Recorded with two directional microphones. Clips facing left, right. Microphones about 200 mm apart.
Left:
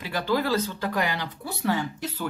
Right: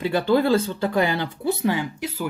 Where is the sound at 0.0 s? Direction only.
30° right (ahead or behind).